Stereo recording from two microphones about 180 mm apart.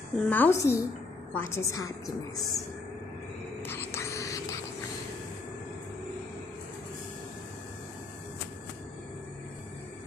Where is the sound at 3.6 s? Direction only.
15° left (ahead or behind).